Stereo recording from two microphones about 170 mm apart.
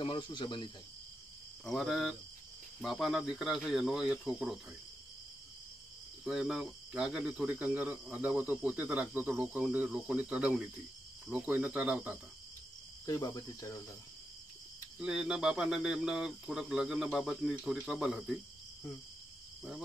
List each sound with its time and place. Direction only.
0.0 s cricket: 25° left (ahead or behind)
1.6 s speech: centre (ahead or behind)
6.2 s speech: 5° right (ahead or behind)
13.0 s cricket: 20° left (ahead or behind)
15.0 s speech: 5° right (ahead or behind)